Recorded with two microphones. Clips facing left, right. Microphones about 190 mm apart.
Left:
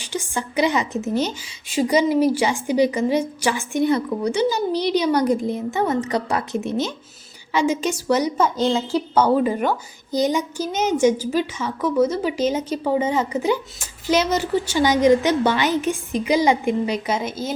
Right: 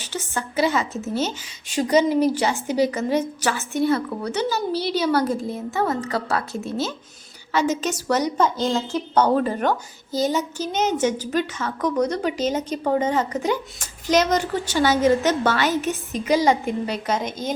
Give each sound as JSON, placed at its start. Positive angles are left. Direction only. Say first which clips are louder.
{"t": 0.0, "sound": "a woman's voice", "louder": "left 2 dB", "side_deg": 10}